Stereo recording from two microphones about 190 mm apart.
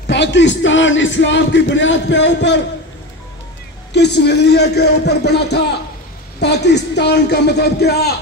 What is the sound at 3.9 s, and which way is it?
A man's voice, 60° left (ahead or behind).